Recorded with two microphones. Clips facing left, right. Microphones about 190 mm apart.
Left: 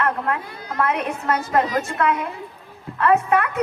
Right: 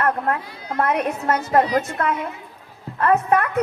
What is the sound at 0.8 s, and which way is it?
Speech, 55° right (ahead or behind).